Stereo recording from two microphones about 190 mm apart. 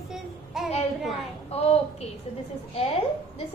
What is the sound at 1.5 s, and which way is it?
Speech, 35° left (ahead or behind).